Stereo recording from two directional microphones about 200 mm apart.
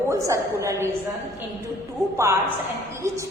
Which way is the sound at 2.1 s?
15° right (ahead or behind).